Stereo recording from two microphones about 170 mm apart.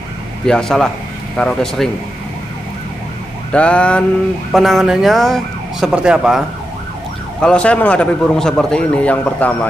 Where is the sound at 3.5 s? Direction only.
5° left (ahead or behind).